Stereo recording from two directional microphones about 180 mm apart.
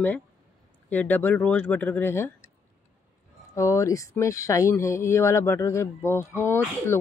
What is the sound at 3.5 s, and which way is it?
Speech, 15° left (ahead or behind).